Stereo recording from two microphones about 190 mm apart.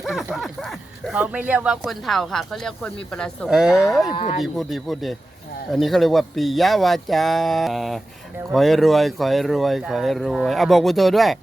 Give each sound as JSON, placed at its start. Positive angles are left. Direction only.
{"t": 0.0, "sound": "speech", "side_deg": 0}